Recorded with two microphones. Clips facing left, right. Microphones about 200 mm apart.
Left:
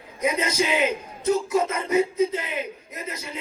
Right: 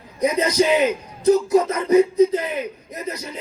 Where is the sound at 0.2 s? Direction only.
35° right (ahead or behind).